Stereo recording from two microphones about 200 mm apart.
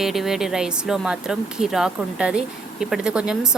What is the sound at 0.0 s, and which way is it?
Speech, centre (ahead or behind).